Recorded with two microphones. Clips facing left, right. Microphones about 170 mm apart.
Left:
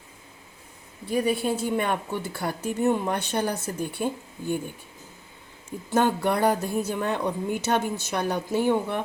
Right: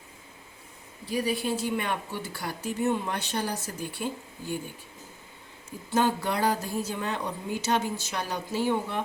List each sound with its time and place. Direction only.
1.1 s a woman's voice: 55° left (ahead or behind)
5.9 s a woman's voice: 55° left (ahead or behind)